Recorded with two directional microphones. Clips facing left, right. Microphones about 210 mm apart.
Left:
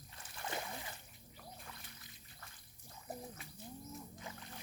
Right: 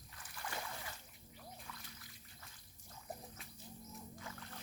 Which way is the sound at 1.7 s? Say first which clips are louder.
Right 1 dB; 20° left (ahead or behind).